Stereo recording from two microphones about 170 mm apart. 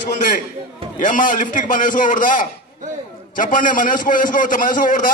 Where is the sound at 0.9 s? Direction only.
50° left (ahead or behind).